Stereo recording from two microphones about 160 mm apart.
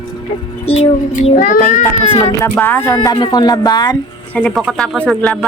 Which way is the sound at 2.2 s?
15° left (ahead or behind).